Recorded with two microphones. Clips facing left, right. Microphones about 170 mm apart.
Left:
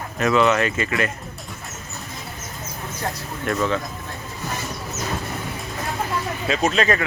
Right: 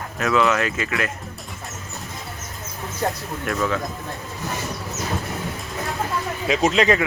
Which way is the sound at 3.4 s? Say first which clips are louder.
Left 1 dB; centre (ahead or behind).